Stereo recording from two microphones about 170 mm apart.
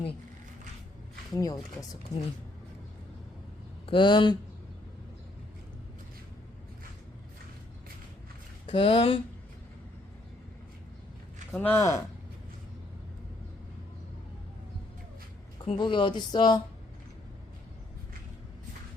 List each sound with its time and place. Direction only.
1.4 s speech: 20° left (ahead or behind)
3.8 s speech: 30° left (ahead or behind)
8.6 s speech: 30° left (ahead or behind)
11.5 s speech: 10° left (ahead or behind)
15.6 s speech: 30° left (ahead or behind)